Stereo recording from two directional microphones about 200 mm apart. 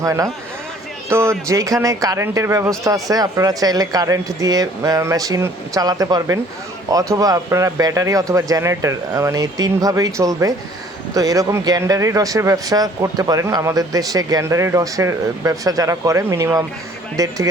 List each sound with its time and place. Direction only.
0.0 s speech: 15° right (ahead or behind)